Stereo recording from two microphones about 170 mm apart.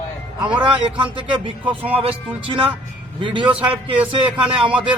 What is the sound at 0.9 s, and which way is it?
Speech, 30° right (ahead or behind).